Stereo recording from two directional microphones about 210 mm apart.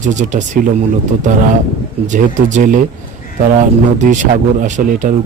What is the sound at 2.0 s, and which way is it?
Speech, 35° right (ahead or behind).